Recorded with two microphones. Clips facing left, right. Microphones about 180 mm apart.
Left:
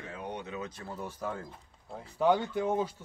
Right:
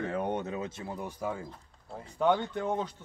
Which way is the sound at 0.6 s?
20° right (ahead or behind).